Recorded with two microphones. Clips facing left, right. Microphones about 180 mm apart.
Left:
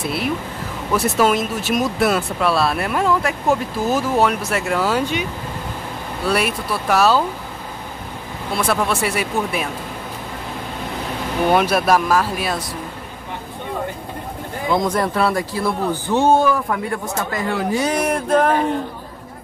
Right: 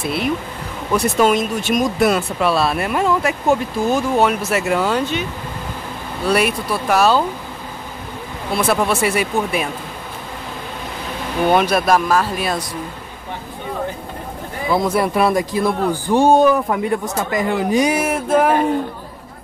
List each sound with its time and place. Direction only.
0.9 s speech: 5° left (ahead or behind)
6.2 s speech: centre (ahead or behind)
8.5 s speech: 5° right (ahead or behind)
11.5 s speech: 5° left (ahead or behind)
14.7 s a man's voice: 5° right (ahead or behind)